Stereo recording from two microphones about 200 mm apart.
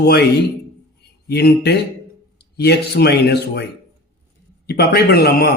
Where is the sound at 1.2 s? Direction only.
55° left (ahead or behind).